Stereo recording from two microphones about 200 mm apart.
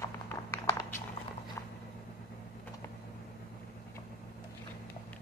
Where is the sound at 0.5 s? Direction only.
10° left (ahead or behind).